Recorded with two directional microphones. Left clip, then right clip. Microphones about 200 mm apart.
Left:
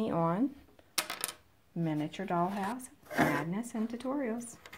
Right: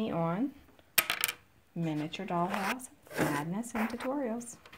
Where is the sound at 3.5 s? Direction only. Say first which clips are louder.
Right 3 dB; 15° right (ahead or behind).